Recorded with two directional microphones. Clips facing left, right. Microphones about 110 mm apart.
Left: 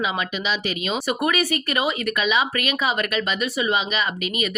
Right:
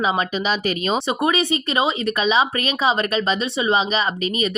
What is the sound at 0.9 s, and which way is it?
Speech, 25° right (ahead or behind).